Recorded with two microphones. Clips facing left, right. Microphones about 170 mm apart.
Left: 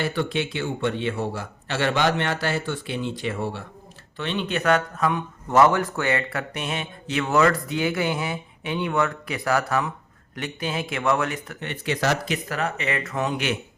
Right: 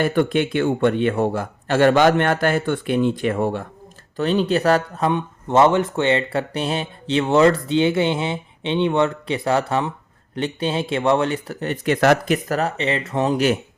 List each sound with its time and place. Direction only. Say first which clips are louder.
0.0 s a man's voice: right 7 dB; 50° right (ahead or behind)
4.2 s speech: right 8 dB; 40° right (ahead or behind)
11.9 s speech: right 8 dB; 55° right (ahead or behind); by 13.6 s 40° right (ahead or behind)